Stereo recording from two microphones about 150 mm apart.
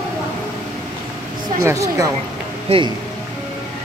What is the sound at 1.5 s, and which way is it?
Speech, 20° right (ahead or behind).